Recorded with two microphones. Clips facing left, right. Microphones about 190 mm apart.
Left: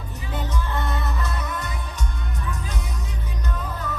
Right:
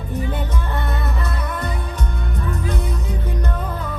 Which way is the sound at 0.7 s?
55° right (ahead or behind).